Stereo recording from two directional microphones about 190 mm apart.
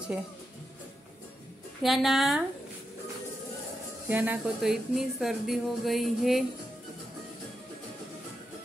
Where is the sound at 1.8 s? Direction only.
Centre (ahead or behind).